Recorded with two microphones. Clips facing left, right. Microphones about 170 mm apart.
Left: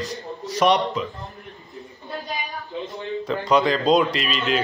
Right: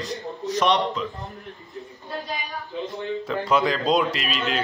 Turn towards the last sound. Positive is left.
turn(degrees=-5)  # may be behind; listen again after turning